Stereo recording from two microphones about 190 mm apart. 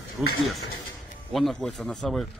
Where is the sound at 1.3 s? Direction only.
Centre (ahead or behind).